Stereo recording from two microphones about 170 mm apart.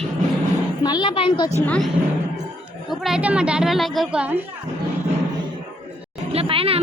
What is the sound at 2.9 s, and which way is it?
A woman's voice, centre (ahead or behind).